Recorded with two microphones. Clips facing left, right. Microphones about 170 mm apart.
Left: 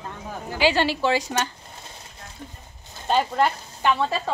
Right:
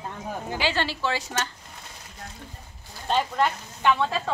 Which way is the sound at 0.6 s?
15° left (ahead or behind).